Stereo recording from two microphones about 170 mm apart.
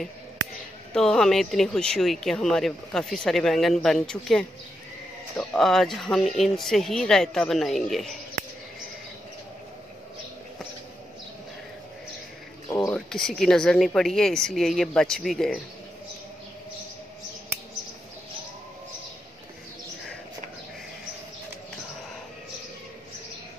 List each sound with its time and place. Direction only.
0.9 s speech: 5° left (ahead or behind)
12.6 s a sound: 20° left (ahead or behind)
12.9 s speech: 5° left (ahead or behind)